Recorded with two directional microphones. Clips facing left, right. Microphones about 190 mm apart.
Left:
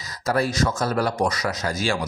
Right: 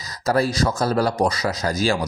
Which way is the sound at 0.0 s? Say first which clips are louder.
Right 3 dB; 35° right (ahead or behind).